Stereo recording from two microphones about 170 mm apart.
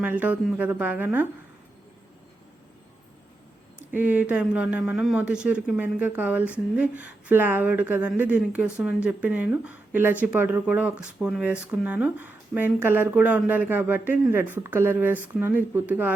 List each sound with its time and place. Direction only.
0.0 s speech: 10° right (ahead or behind)
3.9 s speech: 10° right (ahead or behind)